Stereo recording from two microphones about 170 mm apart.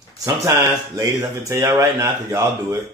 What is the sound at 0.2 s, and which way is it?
Speech, 20° right (ahead or behind).